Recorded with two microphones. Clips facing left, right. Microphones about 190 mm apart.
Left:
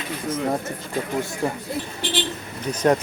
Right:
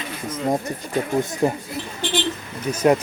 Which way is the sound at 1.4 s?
15° right (ahead or behind).